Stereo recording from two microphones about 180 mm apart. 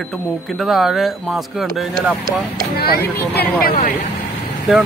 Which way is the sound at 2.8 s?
60° left (ahead or behind).